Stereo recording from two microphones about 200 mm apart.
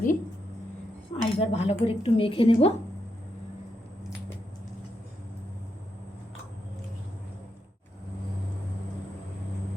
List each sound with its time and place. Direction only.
1.2 s speech: 30° left (ahead or behind)